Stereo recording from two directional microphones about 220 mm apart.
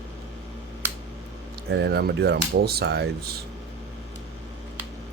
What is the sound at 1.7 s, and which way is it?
Speech, 50° right (ahead or behind).